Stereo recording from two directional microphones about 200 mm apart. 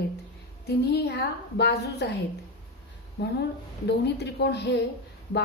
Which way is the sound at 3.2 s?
55° left (ahead or behind).